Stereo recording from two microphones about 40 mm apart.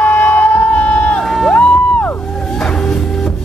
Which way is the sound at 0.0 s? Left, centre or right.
Left.